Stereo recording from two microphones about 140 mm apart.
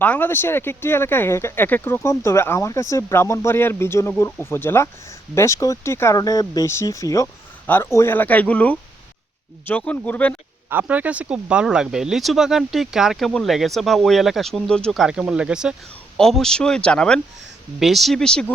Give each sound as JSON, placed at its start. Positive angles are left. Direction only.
{"t": 0.0, "sound": "speech", "side_deg": 15}
{"t": 10.7, "sound": "speech", "side_deg": -10}